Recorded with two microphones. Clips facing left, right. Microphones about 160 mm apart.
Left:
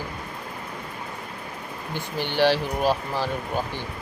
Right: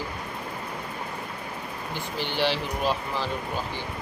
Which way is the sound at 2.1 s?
50° left (ahead or behind).